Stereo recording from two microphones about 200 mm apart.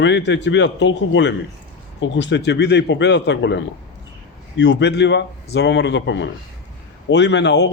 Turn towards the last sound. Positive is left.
turn(degrees=60)  # may be behind; listen again after turning